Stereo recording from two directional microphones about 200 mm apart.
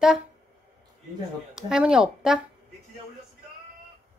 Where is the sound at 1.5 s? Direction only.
5° right (ahead or behind).